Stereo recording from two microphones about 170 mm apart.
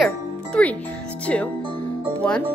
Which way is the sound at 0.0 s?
5° left (ahead or behind).